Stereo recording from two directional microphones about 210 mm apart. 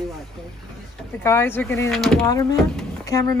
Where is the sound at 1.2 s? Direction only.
10° left (ahead or behind).